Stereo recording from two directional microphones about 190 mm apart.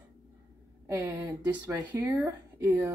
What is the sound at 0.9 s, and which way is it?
Speech, 15° right (ahead or behind).